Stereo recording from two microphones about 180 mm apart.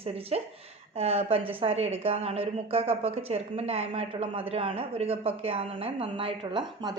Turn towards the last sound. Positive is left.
turn(degrees=-25)  # may be behind; listen again after turning